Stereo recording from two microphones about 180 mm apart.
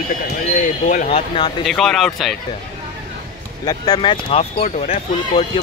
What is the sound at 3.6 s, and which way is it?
Speech, 25° left (ahead or behind).